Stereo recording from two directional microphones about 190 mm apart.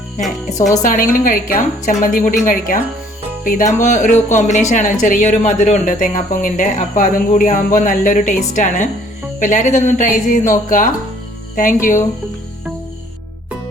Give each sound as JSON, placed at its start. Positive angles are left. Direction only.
{"t": 0.8, "sound": "a woman's voice", "side_deg": 45}